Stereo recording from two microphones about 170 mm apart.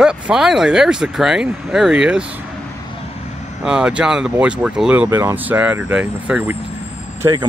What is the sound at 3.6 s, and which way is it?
Speech, 5° right (ahead or behind).